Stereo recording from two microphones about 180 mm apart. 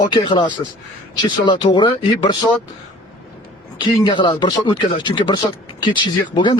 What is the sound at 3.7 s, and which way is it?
Speech, 25° left (ahead or behind).